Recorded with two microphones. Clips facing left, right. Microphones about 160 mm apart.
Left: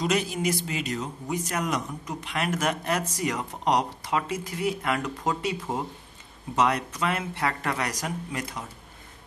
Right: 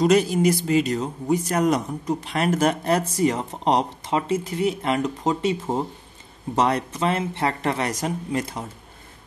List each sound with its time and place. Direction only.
0.0 s a man's voice: 35° right (ahead or behind)